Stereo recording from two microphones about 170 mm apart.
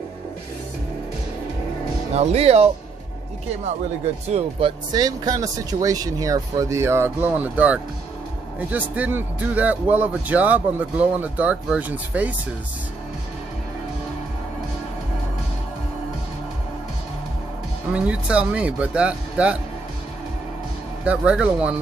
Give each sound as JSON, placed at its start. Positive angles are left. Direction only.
{"t": 2.1, "sound": "speech", "side_deg": -35}
{"t": 4.3, "sound": "speech", "side_deg": -35}
{"t": 17.9, "sound": "speech", "side_deg": -5}
{"t": 21.0, "sound": "speech", "side_deg": -5}